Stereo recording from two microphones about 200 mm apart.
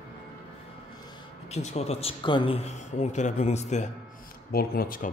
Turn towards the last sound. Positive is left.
turn(degrees=45)  # may be behind; listen again after turning